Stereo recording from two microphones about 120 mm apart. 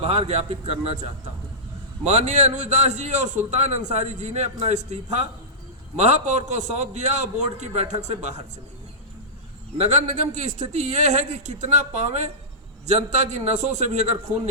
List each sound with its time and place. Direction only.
0.0 s a man's voice: 60° right (ahead or behind)
2.0 s a man's voice: 75° right (ahead or behind)
6.0 s a man's voice: 70° right (ahead or behind)
9.7 s a man's voice: 65° right (ahead or behind)